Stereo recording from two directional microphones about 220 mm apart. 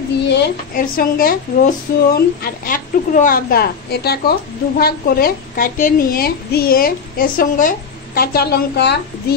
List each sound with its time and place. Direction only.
0.3 s speech: 45° left (ahead or behind)